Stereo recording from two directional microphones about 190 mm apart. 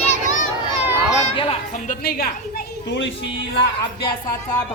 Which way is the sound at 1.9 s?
50° left (ahead or behind).